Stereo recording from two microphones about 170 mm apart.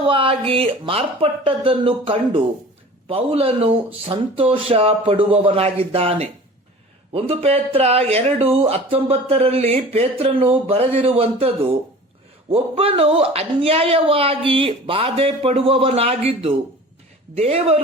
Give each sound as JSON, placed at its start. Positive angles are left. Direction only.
{"t": 0.1, "sound": "speech", "side_deg": -30}